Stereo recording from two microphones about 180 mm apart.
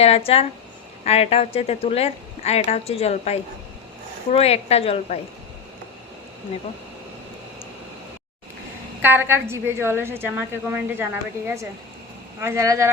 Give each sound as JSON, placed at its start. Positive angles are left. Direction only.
{"t": 0.3, "sound": "a woman's voice", "side_deg": 35}
{"t": 9.0, "sound": "a woman's voice", "side_deg": -10}